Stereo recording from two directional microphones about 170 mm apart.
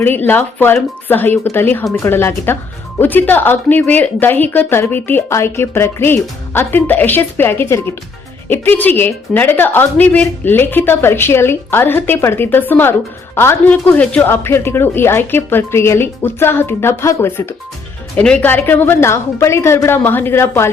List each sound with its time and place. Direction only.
0.0 s a woman's voice: 10° left (ahead or behind)